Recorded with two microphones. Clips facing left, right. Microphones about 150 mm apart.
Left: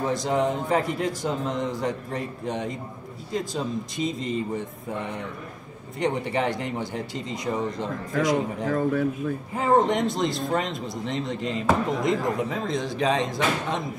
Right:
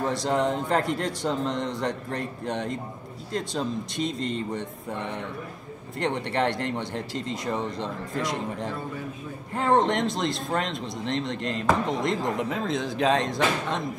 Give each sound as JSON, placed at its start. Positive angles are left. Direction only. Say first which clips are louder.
{"t": 0.0, "sound": "a man's voice", "louder": "left 1 dB", "side_deg": 0}
{"t": 8.6, "sound": "a man's voice", "louder": "left 9 dB", "side_deg": 85}
{"t": 9.5, "sound": "a man's voice", "louder": "left 1 dB", "side_deg": 5}